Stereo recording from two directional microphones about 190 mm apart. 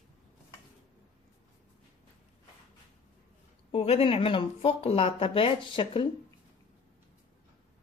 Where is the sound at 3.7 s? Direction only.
30° left (ahead or behind).